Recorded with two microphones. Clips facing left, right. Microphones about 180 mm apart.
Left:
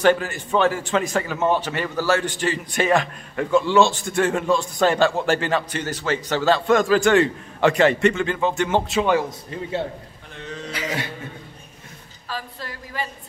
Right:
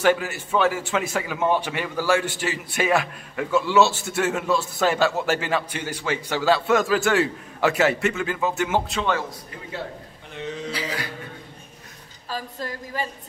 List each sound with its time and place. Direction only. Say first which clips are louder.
0.0 s a man's voice: left 2 dB; 10° right (ahead or behind)
8.9 s a man's voice: left 5 dB; 15° left (ahead or behind)
9.5 s a man's voice: left 7 dB; 25° left (ahead or behind)
12.3 s a woman's voice: right 2 dB; 45° right (ahead or behind)